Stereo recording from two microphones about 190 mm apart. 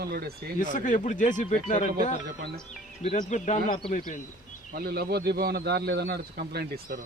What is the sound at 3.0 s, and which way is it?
Speech, 35° left (ahead or behind).